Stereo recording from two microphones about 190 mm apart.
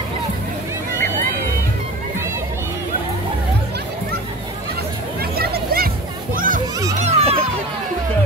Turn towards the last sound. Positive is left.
turn(degrees=-30)  # may be behind; listen again after turning